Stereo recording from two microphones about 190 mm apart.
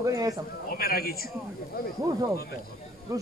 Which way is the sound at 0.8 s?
55° left (ahead or behind).